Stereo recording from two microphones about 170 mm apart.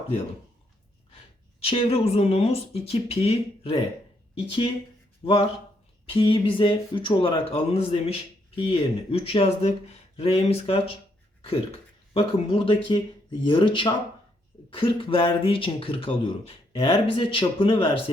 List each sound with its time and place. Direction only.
1.5 s speech: 35° left (ahead or behind)
5.2 s speech: 35° left (ahead or behind)
12.1 s speech: 30° left (ahead or behind)